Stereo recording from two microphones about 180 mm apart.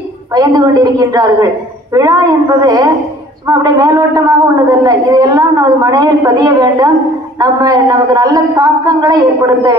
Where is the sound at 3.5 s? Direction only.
20° right (ahead or behind).